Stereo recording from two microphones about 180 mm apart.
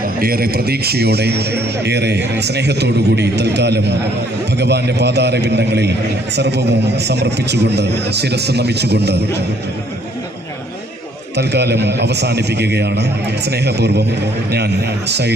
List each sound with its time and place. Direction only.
0.2 s a man's voice: 55° right (ahead or behind)
11.3 s a man's voice: 65° right (ahead or behind)